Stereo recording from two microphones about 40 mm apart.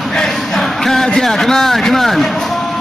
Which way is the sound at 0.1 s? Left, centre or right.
Centre.